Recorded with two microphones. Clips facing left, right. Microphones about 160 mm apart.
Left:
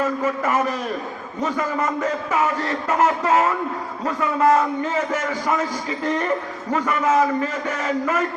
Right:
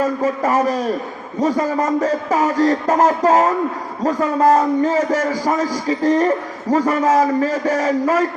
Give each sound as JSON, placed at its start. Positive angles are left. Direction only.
{"t": 0.2, "sound": "a man's voice", "side_deg": -35}